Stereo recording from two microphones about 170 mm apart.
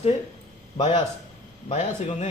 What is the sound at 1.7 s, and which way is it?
Speech, 40° left (ahead or behind).